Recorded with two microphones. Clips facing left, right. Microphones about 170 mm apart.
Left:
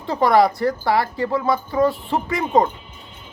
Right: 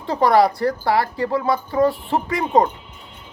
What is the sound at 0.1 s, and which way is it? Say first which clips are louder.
Speech: even; 20° left (ahead or behind).